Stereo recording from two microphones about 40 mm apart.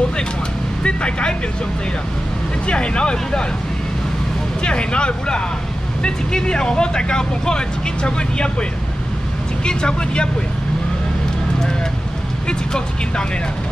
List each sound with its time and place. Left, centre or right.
0.8 s speech: left
2.6 s speech: left
4.6 s speech: left
9.7 s speech: left
12.4 s speech: left